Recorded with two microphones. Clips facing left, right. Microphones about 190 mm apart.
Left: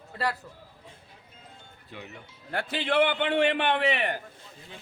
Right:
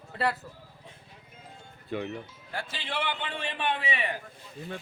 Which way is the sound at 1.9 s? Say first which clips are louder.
Right 11 dB; 55° right (ahead or behind).